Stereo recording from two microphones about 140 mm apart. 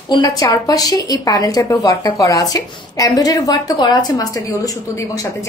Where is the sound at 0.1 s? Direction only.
25° left (ahead or behind).